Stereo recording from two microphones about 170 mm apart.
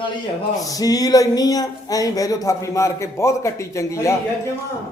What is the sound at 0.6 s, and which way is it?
Speech, 20° left (ahead or behind).